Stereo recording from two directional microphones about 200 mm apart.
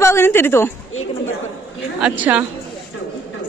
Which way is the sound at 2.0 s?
5° right (ahead or behind).